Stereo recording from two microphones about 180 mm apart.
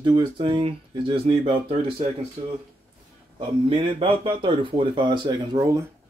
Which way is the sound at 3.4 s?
30° right (ahead or behind).